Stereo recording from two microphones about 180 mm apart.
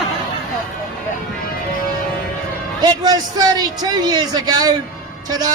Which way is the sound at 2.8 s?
20° right (ahead or behind).